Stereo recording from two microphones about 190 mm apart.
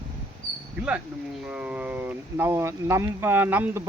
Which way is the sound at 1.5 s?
5° right (ahead or behind).